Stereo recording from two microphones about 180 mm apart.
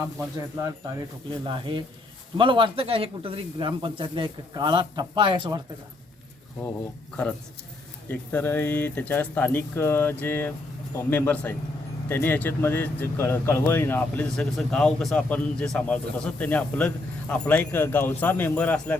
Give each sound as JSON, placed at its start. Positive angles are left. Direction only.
{"t": 1.5, "sound": "speech", "side_deg": -25}
{"t": 8.0, "sound": "speech", "side_deg": 10}